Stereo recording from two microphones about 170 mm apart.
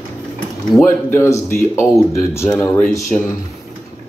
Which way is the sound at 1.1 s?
15° left (ahead or behind).